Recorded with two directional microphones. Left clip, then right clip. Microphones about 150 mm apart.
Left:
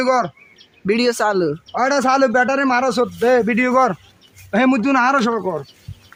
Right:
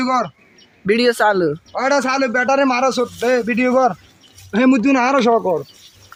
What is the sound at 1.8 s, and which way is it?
A man's voice, 25° left (ahead or behind).